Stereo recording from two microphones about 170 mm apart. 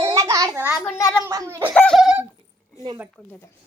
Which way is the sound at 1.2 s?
15° right (ahead or behind).